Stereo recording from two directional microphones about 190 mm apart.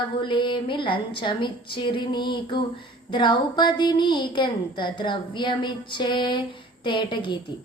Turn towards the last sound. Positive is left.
turn(degrees=25)  # may be behind; listen again after turning